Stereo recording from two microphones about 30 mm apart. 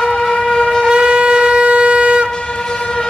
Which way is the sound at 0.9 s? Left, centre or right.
Right.